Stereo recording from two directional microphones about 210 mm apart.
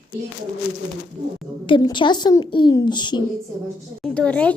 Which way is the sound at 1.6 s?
20° left (ahead or behind).